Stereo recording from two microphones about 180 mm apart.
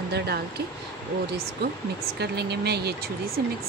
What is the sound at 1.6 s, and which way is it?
Speech, 65° right (ahead or behind).